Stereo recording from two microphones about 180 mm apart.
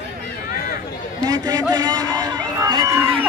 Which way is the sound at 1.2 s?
20° right (ahead or behind).